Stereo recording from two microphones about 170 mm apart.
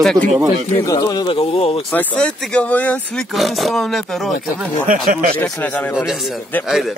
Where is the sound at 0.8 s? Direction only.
20° left (ahead or behind).